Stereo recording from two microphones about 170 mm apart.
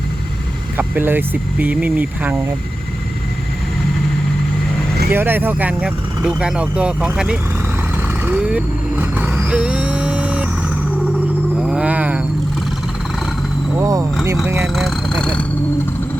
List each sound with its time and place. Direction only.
0.8 s speech: 10° right (ahead or behind)
5.1 s speech: 10° right (ahead or behind)
8.0 s vehicle: 10° right (ahead or behind)
11.6 s a sound: 5° right (ahead or behind)
13.7 s speech: 20° right (ahead or behind)
14.8 s speech: centre (ahead or behind)